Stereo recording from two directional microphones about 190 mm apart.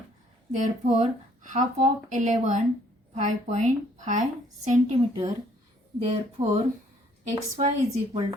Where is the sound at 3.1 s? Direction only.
40° right (ahead or behind).